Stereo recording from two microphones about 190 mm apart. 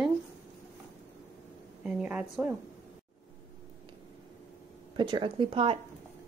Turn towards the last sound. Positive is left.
turn(degrees=-30)  # may be behind; listen again after turning